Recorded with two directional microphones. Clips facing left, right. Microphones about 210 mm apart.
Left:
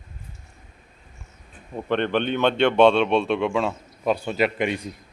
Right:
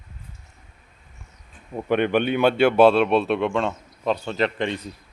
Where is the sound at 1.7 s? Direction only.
10° right (ahead or behind); by 4.9 s 10° left (ahead or behind).